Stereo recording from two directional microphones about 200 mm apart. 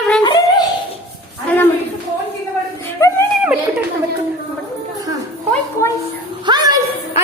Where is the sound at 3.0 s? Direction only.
15° left (ahead or behind).